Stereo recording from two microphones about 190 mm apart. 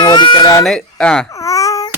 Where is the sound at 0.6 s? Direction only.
Centre (ahead or behind).